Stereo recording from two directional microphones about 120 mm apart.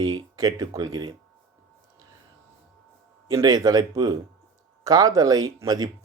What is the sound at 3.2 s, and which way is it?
Speech, 30° right (ahead or behind).